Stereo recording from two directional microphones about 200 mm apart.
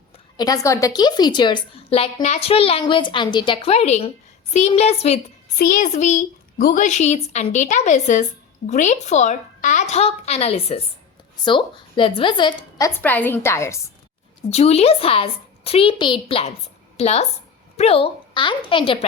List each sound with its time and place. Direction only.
0.3 s a woman's voice: 20° left (ahead or behind)
5.5 s a woman's voice: 45° left (ahead or behind); by 12.9 s 20° left (ahead or behind)
13.0 s a woman's voice: 10° left (ahead or behind)
14.5 s a woman's voice: 30° left (ahead or behind)